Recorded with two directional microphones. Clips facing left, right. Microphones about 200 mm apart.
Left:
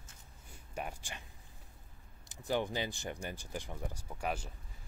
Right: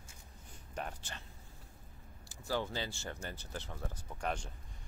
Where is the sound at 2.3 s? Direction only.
20° left (ahead or behind).